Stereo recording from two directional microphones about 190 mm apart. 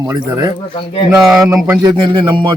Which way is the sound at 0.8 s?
30° left (ahead or behind).